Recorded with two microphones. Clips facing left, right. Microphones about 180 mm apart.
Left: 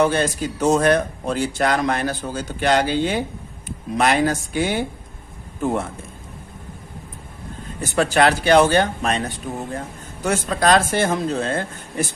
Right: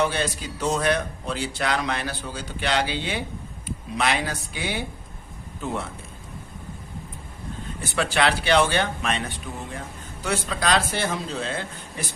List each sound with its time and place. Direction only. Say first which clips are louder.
0.0 s speech: left 6 dB; 45° left (ahead or behind)
7.8 s speech: left 6 dB; 45° left (ahead or behind)